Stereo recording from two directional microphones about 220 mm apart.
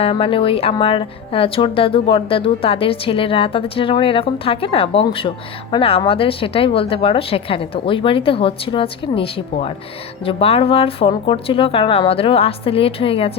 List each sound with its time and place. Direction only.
0.0 s a woman's voice: 25° left (ahead or behind)